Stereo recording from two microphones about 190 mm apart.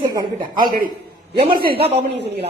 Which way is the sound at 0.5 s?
50° right (ahead or behind).